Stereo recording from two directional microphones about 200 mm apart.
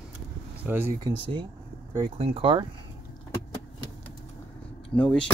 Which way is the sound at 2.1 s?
30° right (ahead or behind).